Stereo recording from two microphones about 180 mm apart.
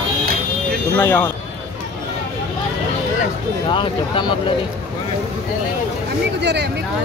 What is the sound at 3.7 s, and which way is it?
Speech, 25° left (ahead or behind).